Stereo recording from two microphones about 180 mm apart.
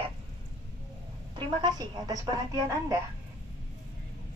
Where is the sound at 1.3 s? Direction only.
25° right (ahead or behind).